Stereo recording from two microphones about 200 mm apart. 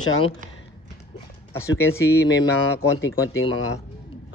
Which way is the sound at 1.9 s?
15° left (ahead or behind).